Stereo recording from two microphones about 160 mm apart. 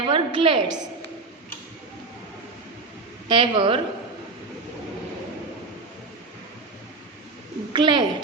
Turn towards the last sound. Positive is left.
turn(degrees=-30)  # may be behind; listen again after turning